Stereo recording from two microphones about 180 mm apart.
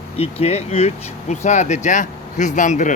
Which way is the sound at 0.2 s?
35° left (ahead or behind).